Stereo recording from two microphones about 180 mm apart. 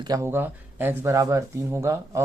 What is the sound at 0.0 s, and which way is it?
Speech, 20° right (ahead or behind).